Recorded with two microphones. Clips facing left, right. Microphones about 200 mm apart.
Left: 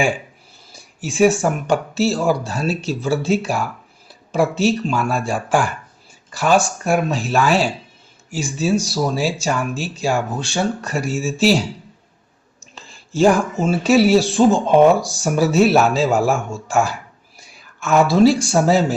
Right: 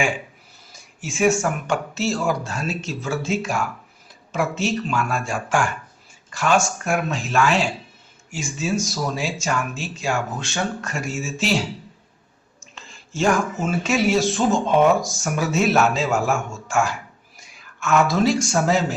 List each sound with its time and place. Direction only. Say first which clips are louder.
0.7 s a sound: left 5 dB; 35° left (ahead or behind)
1.6 s speech: left 5 dB; 35° left (ahead or behind)
12.7 s speech: left 8 dB; 35° left (ahead or behind)